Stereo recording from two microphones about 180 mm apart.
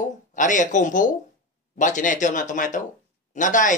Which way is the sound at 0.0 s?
45° left (ahead or behind).